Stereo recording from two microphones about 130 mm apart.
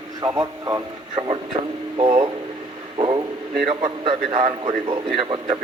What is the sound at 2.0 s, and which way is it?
A man's voice, 40° right (ahead or behind).